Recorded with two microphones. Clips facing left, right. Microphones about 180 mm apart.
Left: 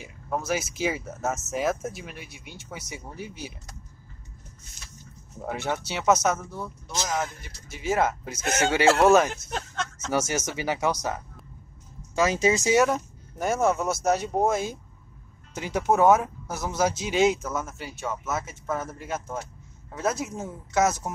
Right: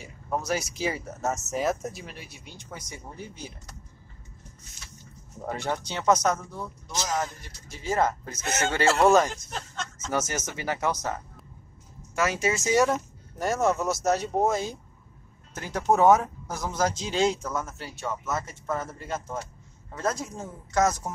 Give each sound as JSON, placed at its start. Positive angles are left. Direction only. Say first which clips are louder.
{"t": 0.0, "sound": "speech", "louder": "even", "side_deg": 0}
{"t": 5.4, "sound": "speech", "louder": "left 1 dB", "side_deg": 5}
{"t": 12.7, "sound": "speech", "louder": "left 1 dB", "side_deg": 0}